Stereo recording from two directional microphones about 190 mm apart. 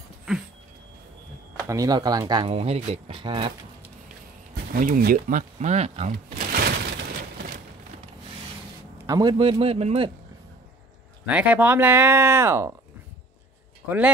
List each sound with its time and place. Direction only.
1.7 s speech: 20° right (ahead or behind)
4.7 s speech: 50° right (ahead or behind)
8.9 s speech: 20° right (ahead or behind)
11.2 s speech: 5° right (ahead or behind)
13.8 s speech: 10° right (ahead or behind)